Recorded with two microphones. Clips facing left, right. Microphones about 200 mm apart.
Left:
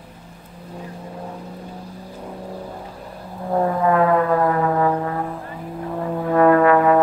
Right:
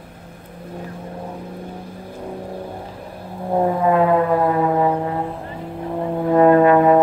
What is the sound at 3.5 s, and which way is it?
Brass instrument, 20° right (ahead or behind).